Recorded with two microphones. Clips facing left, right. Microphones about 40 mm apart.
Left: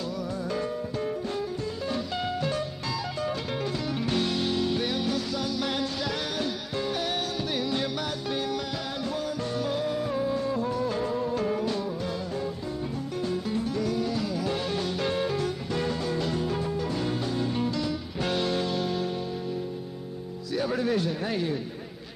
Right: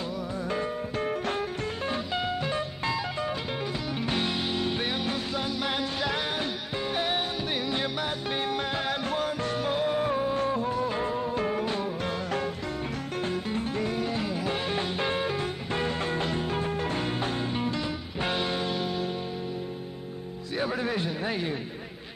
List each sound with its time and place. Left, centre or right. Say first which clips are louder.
0.9 s music: right 3 dB; right
1.9 s music: even; right
10.5 s music: even; right
12.0 s music: right 2 dB; right
13.2 s music: left 1 dB; right
17.6 s music: left 2 dB; right
20.5 s a man's voice: left 2 dB; right